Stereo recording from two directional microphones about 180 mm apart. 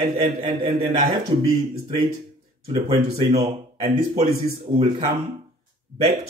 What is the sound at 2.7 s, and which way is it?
Speech, 30° right (ahead or behind).